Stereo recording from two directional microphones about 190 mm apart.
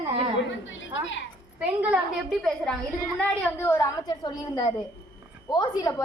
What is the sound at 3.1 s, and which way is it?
A woman's voice, 10° left (ahead or behind).